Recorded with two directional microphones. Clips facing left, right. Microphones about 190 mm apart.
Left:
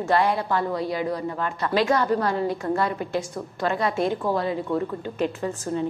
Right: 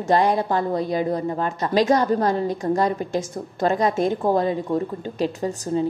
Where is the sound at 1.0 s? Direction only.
25° right (ahead or behind).